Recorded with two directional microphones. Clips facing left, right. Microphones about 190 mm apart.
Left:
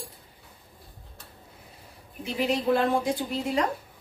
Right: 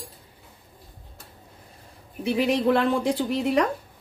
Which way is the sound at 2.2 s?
70° right (ahead or behind).